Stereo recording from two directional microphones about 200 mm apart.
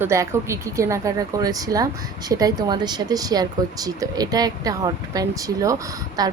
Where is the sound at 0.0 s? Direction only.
15° right (ahead or behind).